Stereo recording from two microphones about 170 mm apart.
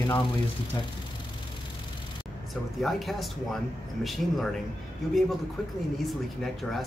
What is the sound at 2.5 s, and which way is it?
Speech, centre (ahead or behind).